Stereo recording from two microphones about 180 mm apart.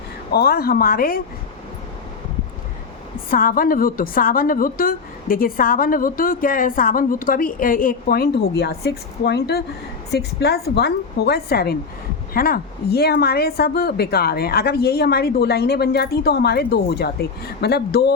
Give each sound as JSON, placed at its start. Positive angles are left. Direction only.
{"t": 0.3, "sound": "a woman's voice", "side_deg": 60}
{"t": 3.2, "sound": "a woman's voice", "side_deg": 50}